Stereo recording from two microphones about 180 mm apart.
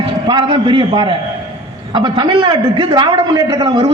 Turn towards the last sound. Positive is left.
turn(degrees=-25)  # may be behind; listen again after turning